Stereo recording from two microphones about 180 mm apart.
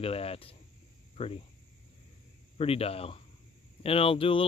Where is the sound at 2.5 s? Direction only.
35° left (ahead or behind).